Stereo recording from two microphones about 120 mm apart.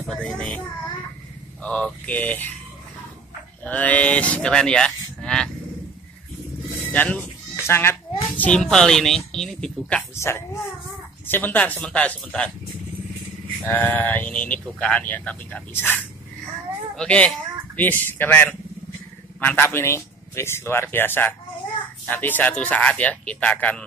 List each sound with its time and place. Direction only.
0.0 s speech: 5° left (ahead or behind)
1.6 s speech: 10° left (ahead or behind)
3.6 s speech: 10° left (ahead or behind)
6.9 s bleat: 10° left (ahead or behind)
8.4 s speech: 5° left (ahead or behind)
10.1 s speech: 20° left (ahead or behind)
13.6 s speech: 15° left (ahead or behind)